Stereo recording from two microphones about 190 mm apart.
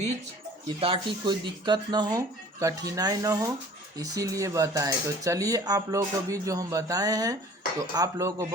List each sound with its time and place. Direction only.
0.8 s speech: 25° right (ahead or behind)